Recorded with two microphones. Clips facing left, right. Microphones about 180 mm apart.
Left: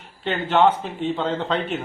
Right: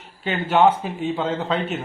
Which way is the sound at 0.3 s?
10° right (ahead or behind).